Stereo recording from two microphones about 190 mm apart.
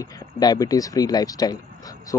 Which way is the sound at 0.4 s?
20° left (ahead or behind).